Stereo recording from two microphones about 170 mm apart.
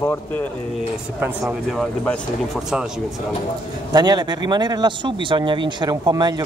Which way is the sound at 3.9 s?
25° right (ahead or behind).